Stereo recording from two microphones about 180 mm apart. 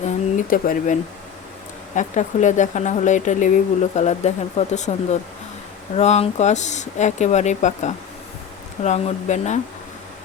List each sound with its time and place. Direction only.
0.0 s a sound: 50° left (ahead or behind)
2.0 s speech: 45° left (ahead or behind)
6.0 s speech: 40° left (ahead or behind)